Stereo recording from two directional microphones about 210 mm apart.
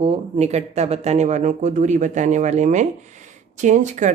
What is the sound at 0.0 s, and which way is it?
A woman's voice, 30° right (ahead or behind).